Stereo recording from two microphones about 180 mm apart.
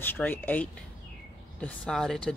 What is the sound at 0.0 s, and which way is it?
Speech, 10° left (ahead or behind).